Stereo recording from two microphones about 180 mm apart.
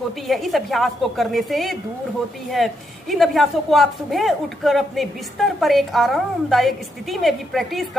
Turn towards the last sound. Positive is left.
turn(degrees=0)  # may be behind; listen again after turning